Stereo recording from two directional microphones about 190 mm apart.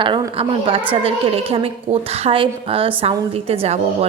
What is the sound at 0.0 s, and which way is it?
A woman's voice, 25° right (ahead or behind).